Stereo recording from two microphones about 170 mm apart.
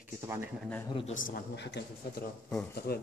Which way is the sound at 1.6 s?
80° left.